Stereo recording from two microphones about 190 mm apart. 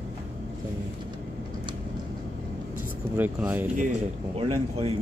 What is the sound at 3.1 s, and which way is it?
Speech, 10° right (ahead or behind).